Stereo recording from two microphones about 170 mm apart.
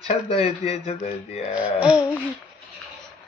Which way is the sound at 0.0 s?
35° left (ahead or behind).